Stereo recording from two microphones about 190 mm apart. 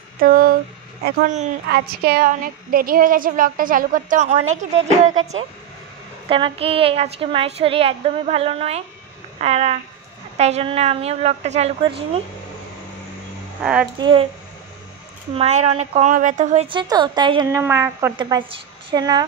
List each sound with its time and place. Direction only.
0.2 s a woman's voice: 50° right (ahead or behind)
1.7 s a woman's voice: 55° right (ahead or behind); by 5.1 s 40° right (ahead or behind)
6.2 s a woman's voice: 30° right (ahead or behind)
13.6 s speech: 5° right (ahead or behind)
13.9 s a woman's voice: 25° right (ahead or behind)
15.3 s a woman's voice: 35° right (ahead or behind)
16.6 s a woman's voice: 25° right (ahead or behind)
18.1 s a woman's voice: 25° right (ahead or behind)